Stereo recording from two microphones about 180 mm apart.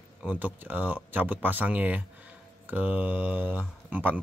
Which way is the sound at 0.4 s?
10° right (ahead or behind).